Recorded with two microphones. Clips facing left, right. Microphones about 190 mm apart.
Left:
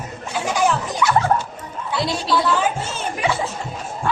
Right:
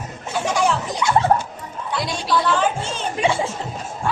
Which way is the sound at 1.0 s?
25° right (ahead or behind).